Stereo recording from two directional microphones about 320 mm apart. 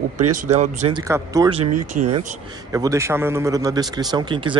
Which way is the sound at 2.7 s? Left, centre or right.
Centre.